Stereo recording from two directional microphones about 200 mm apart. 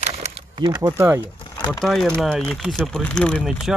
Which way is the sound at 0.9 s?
10° right (ahead or behind).